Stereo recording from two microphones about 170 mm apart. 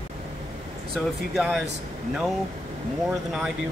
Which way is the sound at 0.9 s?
Centre (ahead or behind).